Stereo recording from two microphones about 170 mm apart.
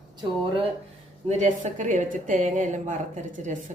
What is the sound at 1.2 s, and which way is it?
A woman's voice, 45° right (ahead or behind).